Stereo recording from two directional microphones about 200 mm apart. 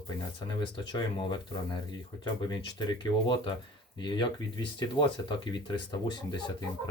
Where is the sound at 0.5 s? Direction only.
20° left (ahead or behind).